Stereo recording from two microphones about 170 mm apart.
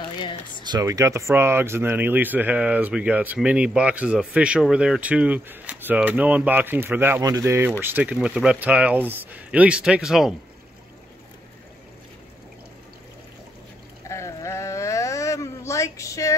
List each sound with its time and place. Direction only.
0.2 s speech: 30° left (ahead or behind)
0.7 s speech: 20° right (ahead or behind); by 10.3 s 5° right (ahead or behind)
14.0 s a sound: 15° left (ahead or behind)